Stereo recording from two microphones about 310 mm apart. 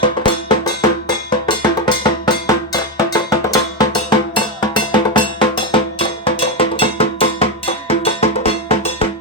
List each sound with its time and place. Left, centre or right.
0.2 s music: centre